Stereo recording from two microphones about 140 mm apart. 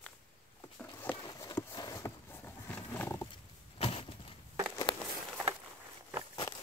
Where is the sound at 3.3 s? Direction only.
40° left (ahead or behind).